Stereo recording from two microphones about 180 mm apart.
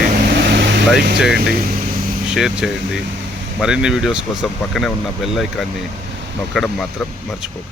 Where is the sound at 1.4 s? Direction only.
60° right (ahead or behind).